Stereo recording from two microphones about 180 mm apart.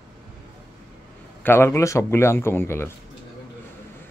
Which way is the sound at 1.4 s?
10° left (ahead or behind).